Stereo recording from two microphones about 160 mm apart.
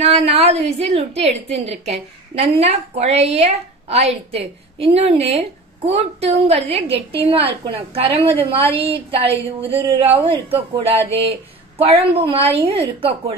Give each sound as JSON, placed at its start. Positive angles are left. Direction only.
{"t": 0.0, "sound": "a woman's voice", "side_deg": -40}